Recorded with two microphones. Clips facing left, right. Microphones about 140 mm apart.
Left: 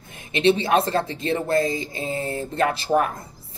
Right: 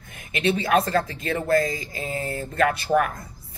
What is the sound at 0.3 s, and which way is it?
Speech, 30° left (ahead or behind).